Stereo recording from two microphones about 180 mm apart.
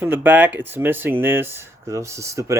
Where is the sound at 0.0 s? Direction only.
10° right (ahead or behind).